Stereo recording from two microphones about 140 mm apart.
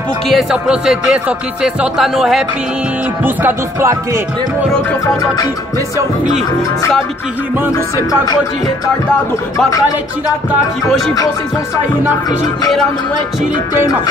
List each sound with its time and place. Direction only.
0.3 s speech: centre (ahead or behind)
3.3 s music: 15° right (ahead or behind)
7.7 s music: 25° left (ahead or behind)